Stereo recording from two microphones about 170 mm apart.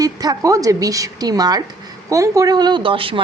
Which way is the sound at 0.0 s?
20° right (ahead or behind).